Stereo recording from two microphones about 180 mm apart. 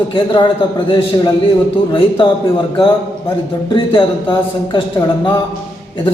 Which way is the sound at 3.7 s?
25° left (ahead or behind).